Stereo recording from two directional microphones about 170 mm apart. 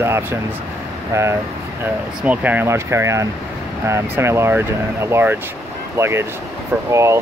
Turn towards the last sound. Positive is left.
turn(degrees=-15)  # may be behind; listen again after turning